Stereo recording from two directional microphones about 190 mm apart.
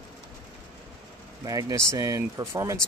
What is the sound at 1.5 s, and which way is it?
Speech, 20° right (ahead or behind).